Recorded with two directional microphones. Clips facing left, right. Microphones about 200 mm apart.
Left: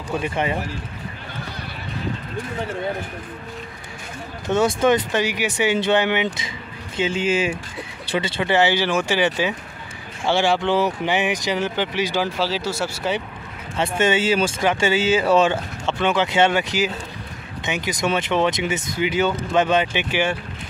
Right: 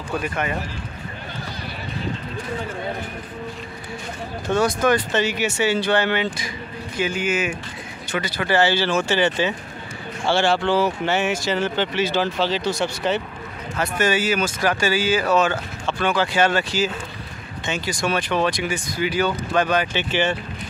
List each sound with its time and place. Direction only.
0.2 s speech: 25° left (ahead or behind)
4.5 s speech: 25° left (ahead or behind)
5.1 s speech: 10° left (ahead or behind)
13.7 s speech: 25° left (ahead or behind)